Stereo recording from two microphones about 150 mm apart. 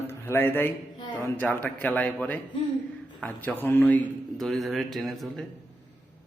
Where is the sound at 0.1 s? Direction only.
15° left (ahead or behind).